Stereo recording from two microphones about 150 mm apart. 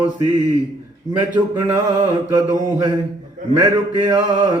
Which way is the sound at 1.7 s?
25° right (ahead or behind).